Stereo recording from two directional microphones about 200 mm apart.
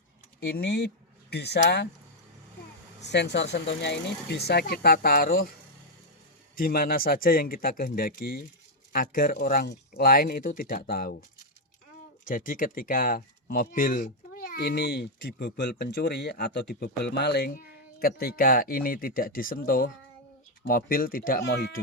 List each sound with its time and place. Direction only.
0.3 s speech: 55° left (ahead or behind)
3.1 s speech: 60° left (ahead or behind)
6.6 s speech: 45° left (ahead or behind)
12.2 s speech: 45° left (ahead or behind)